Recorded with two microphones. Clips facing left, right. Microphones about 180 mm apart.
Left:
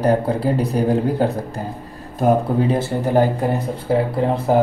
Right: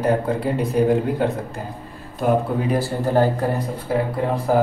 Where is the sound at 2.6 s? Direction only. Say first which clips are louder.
Left 2 dB; 25° left (ahead or behind).